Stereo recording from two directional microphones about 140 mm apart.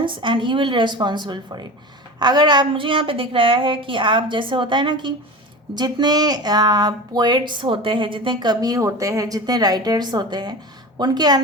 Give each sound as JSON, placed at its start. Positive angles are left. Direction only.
{"t": 0.0, "sound": "a woman's voice", "side_deg": -35}